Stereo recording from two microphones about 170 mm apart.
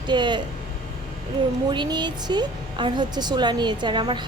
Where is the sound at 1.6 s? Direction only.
25° right (ahead or behind).